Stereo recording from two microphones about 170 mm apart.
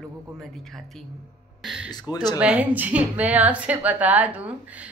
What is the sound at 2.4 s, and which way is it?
A woman's voice, 5° right (ahead or behind).